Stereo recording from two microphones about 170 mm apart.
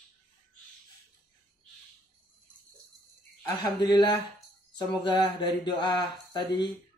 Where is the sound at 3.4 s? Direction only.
25° left (ahead or behind).